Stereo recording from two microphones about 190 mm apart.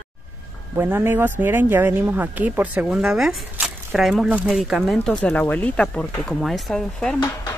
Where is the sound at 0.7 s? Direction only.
10° right (ahead or behind).